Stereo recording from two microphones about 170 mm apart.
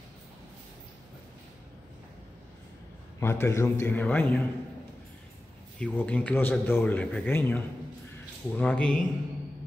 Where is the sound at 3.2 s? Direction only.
15° left (ahead or behind).